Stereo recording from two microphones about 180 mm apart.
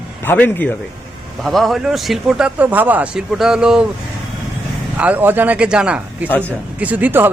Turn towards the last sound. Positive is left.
turn(degrees=-10)  # may be behind; listen again after turning